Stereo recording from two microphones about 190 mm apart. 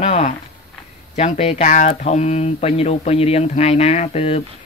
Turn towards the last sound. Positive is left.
turn(degrees=35)  # may be behind; listen again after turning